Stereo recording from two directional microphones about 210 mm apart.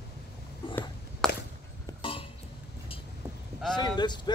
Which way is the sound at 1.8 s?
25° left (ahead or behind).